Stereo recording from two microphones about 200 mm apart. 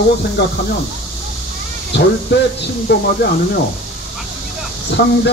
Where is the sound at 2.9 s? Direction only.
55° left (ahead or behind).